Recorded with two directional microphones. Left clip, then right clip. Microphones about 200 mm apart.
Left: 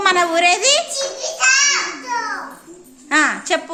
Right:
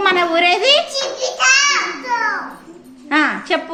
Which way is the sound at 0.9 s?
10° right (ahead or behind).